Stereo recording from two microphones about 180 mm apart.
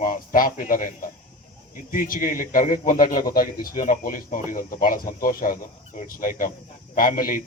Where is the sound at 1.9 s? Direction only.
50° left (ahead or behind).